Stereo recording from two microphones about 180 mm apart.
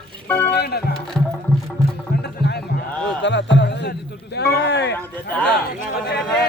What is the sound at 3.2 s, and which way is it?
Music, 80° left.